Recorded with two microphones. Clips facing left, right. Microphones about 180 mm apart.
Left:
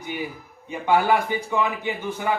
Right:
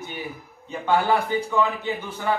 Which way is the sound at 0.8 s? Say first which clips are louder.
Left 1 dB; 10° left (ahead or behind).